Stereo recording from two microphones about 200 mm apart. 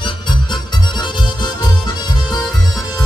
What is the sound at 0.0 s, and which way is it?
Music, 20° left (ahead or behind).